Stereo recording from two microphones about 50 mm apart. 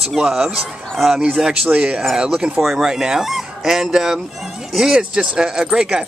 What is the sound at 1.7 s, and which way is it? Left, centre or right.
Speech, centre.